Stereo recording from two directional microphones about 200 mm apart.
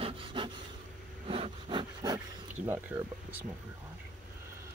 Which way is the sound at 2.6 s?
10° right (ahead or behind).